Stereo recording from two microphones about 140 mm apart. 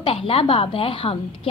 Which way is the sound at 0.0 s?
40° left (ahead or behind).